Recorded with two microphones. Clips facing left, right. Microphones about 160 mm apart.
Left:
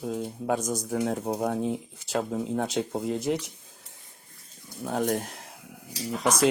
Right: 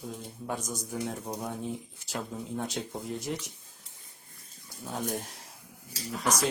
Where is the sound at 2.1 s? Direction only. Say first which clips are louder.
Left 8 dB; 65° left (ahead or behind).